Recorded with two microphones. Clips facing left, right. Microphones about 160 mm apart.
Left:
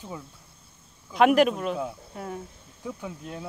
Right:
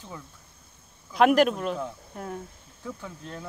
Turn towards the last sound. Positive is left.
turn(degrees=10)  # may be behind; listen again after turning